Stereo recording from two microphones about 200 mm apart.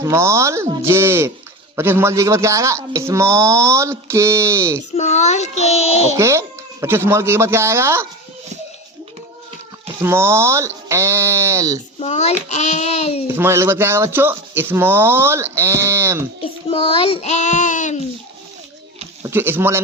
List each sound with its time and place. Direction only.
0.0 s speech: 15° right (ahead or behind)
4.9 s child singing: 35° left (ahead or behind)
6.1 s speech: 15° right (ahead or behind)
10.0 s speech: 10° right (ahead or behind)
11.9 s child singing: 35° left (ahead or behind)
13.2 s speech: 10° right (ahead or behind)
16.6 s child singing: 30° left (ahead or behind)
19.2 s speech: 10° right (ahead or behind)